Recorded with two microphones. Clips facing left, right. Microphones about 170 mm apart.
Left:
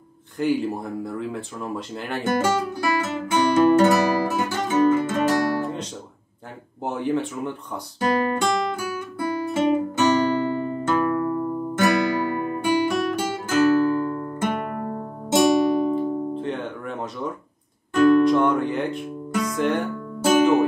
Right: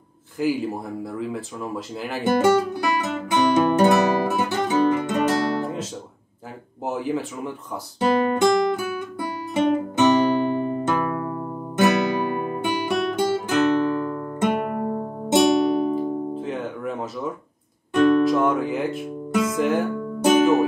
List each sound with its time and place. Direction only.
0.4 s speech: centre (ahead or behind)
2.3 s guitar: 20° right (ahead or behind)
6.8 s speech: centre (ahead or behind)
8.0 s guitar: 20° right (ahead or behind)
9.9 s music: 20° right (ahead or behind); by 19.9 s centre (ahead or behind)